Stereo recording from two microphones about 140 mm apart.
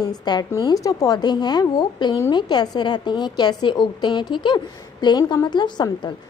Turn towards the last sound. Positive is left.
turn(degrees=30)  # may be behind; listen again after turning